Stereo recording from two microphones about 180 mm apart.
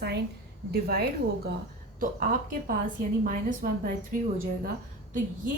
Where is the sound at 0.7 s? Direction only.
60° right (ahead or behind).